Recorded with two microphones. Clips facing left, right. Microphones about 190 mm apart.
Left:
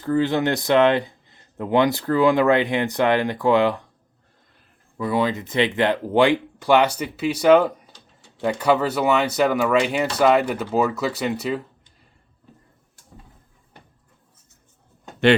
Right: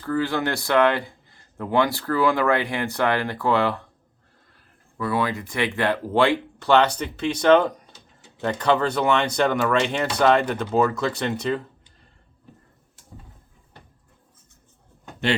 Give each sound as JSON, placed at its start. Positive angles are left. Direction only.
{"t": 0.0, "sound": "speech", "side_deg": 20}
{"t": 4.9, "sound": "speech", "side_deg": 20}